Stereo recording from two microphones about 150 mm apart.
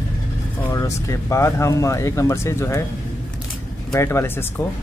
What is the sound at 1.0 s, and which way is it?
Speech, 20° left (ahead or behind).